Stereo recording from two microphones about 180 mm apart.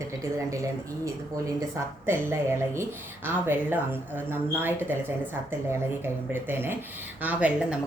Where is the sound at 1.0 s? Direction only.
15° right (ahead or behind).